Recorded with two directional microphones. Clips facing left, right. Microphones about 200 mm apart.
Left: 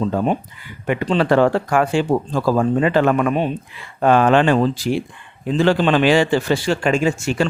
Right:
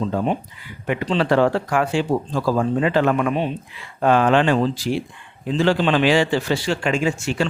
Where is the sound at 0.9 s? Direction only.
50° left (ahead or behind).